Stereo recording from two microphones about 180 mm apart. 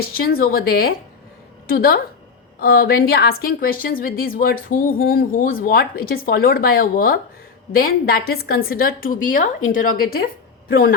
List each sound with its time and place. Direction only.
0.0 s a woman's voice: 55° left (ahead or behind)